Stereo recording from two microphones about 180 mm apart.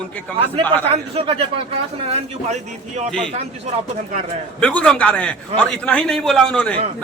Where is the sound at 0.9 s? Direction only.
30° right (ahead or behind).